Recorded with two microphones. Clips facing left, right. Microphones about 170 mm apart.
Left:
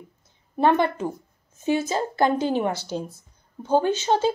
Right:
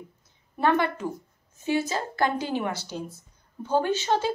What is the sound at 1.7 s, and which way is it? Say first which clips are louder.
A woman's voice: left 3 dB; 20° left (ahead or behind).